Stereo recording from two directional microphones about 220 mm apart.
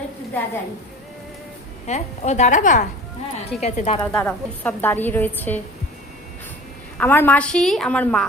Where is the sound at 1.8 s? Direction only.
30° left (ahead or behind).